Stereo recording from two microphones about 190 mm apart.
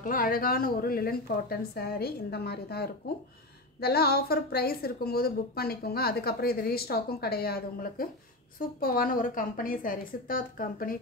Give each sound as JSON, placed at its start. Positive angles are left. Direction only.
{"t": 0.0, "sound": "a woman's voice", "side_deg": 45}